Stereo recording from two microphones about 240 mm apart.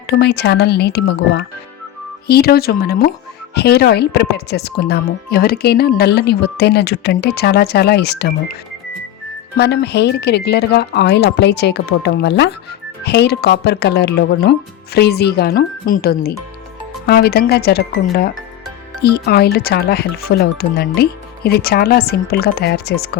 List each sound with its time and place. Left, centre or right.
0.1 s speech: left
9.6 s speech: left